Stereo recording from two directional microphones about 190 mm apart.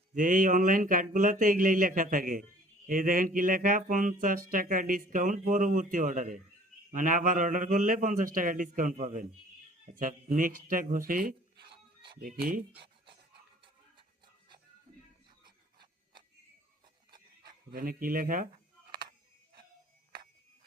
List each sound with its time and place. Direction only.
0.1 s speech: 45° right (ahead or behind)
11.7 s music: 25° right (ahead or behind)
12.2 s speech: 45° right (ahead or behind)
12.7 s a sound: 25° right (ahead or behind)
17.7 s speech: 50° right (ahead or behind)